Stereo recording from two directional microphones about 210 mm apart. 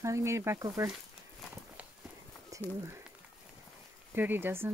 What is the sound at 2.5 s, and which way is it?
Speech, 15° right (ahead or behind).